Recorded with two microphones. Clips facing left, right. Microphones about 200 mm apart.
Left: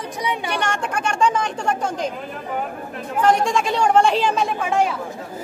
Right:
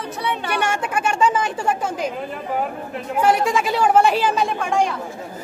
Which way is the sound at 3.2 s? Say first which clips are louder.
Even; 5° right (ahead or behind).